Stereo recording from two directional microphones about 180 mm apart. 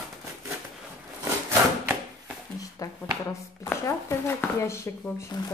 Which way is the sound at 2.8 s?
20° left (ahead or behind).